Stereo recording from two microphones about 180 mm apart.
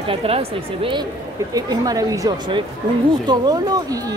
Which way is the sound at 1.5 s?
20° right (ahead or behind).